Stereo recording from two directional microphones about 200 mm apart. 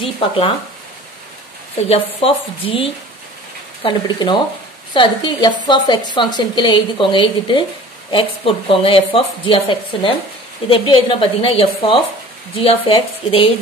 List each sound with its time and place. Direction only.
1.9 s a woman's voice: 25° left (ahead or behind)